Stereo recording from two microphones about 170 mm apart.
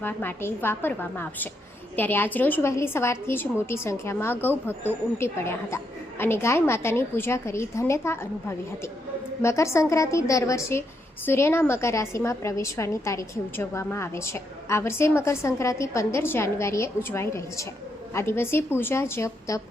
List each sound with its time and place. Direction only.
0.0 s a woman's voice: 10° left (ahead or behind)